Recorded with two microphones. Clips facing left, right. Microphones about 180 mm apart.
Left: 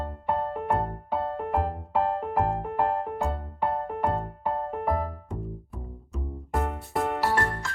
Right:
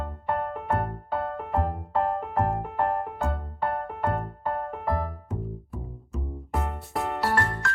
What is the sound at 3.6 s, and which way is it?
Music, 20° left (ahead or behind).